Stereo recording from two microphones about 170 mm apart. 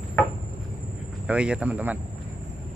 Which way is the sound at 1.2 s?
5° right (ahead or behind).